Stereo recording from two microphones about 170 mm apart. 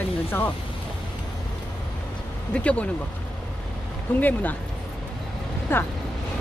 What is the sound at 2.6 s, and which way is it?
Speech, 5° left (ahead or behind).